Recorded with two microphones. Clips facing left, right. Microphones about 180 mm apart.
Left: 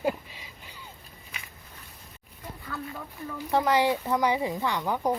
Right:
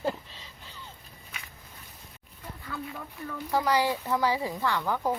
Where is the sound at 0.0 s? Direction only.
10° left (ahead or behind).